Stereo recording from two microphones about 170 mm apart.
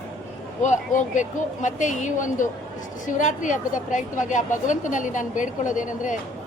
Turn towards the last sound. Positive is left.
turn(degrees=50)  # may be behind; listen again after turning